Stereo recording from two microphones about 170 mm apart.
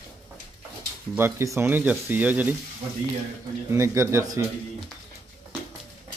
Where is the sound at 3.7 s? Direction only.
15° right (ahead or behind).